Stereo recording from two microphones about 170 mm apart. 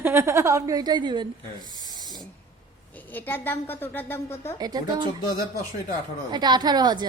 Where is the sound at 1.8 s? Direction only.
25° right (ahead or behind).